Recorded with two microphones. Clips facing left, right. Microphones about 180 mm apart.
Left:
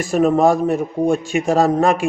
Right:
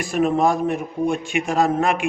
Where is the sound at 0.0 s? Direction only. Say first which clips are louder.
Left 4 dB; 45° left (ahead or behind).